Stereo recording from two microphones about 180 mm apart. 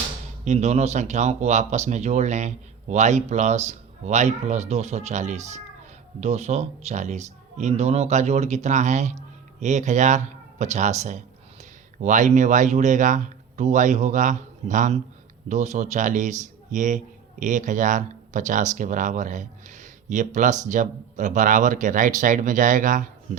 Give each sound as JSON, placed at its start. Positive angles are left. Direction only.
{"t": 0.4, "sound": "speech", "side_deg": -40}